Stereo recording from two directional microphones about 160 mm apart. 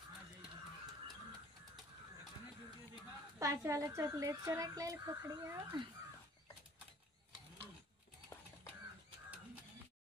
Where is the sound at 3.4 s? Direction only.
20° right (ahead or behind).